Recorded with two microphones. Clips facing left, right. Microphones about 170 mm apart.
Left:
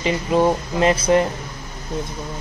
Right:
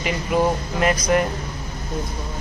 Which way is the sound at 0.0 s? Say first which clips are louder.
Left 3 dB; 25° left (ahead or behind).